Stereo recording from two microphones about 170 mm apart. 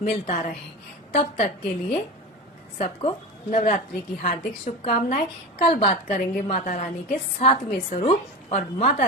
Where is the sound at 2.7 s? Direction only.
35° left (ahead or behind).